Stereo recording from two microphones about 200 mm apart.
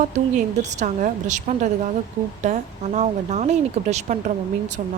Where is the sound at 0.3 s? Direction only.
35° right (ahead or behind).